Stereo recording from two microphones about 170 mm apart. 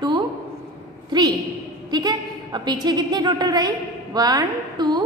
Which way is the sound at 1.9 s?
25° right (ahead or behind).